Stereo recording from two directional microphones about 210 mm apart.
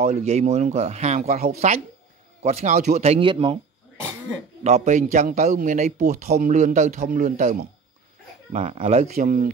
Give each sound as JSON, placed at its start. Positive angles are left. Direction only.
{"t": 0.0, "sound": "a man's voice", "side_deg": -30}
{"t": 4.6, "sound": "a man's voice", "side_deg": -35}
{"t": 9.1, "sound": "a man's voice", "side_deg": -40}